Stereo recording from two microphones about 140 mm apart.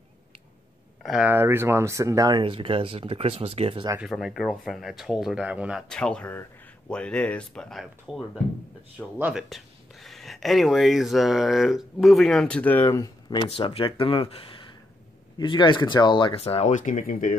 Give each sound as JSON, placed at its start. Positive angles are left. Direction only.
{"t": 1.0, "sound": "a sound", "side_deg": 0}
{"t": 1.3, "sound": "speech", "side_deg": -15}
{"t": 4.0, "sound": "speech", "side_deg": 0}
{"t": 5.9, "sound": "speech", "side_deg": 5}
{"t": 9.2, "sound": "speech", "side_deg": -5}
{"t": 12.8, "sound": "speech", "side_deg": 25}
{"t": 13.5, "sound": "speech", "side_deg": 40}